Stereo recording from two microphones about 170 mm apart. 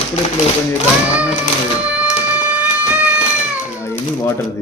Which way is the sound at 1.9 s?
10° right (ahead or behind).